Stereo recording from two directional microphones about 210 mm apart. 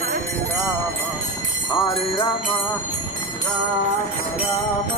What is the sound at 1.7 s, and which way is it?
Jingle bell, 25° left (ahead or behind).